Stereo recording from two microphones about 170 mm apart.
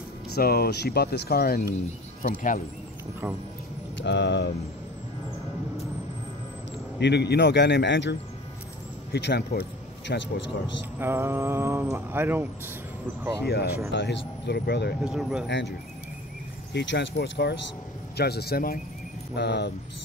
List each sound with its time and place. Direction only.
0.4 s speech: 65° left (ahead or behind)
2.2 s speech: 50° left (ahead or behind)
4.0 s speech: 90° left
7.0 s a man's voice: 80° left
9.1 s a man's voice: 80° left
11.0 s speech: 15° right (ahead or behind)
13.5 s a man's voice: 70° left (ahead or behind)
13.9 s a man's voice: 85° left
15.0 s speech: 5° right (ahead or behind)
16.7 s a man's voice: 90° left; by 18.8 s 60° left (ahead or behind)
19.3 s a man's voice: 80° left